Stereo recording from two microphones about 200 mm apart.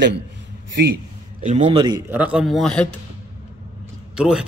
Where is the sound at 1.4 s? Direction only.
35° right (ahead or behind).